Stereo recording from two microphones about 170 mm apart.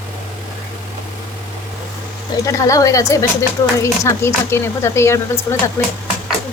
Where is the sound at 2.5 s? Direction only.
20° left (ahead or behind).